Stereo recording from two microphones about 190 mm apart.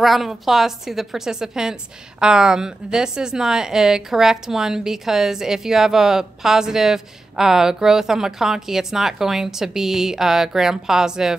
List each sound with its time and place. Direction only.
0.0 s a woman's voice: centre (ahead or behind)